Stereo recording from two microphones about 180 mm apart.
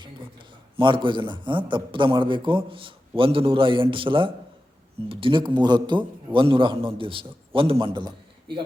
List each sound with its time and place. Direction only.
0.8 s a man's voice: 25° right (ahead or behind)